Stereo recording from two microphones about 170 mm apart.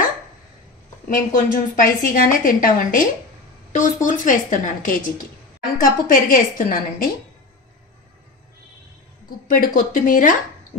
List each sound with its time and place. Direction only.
1.0 s a woman's voice: 50° left (ahead or behind)
9.5 s a woman's voice: 50° left (ahead or behind)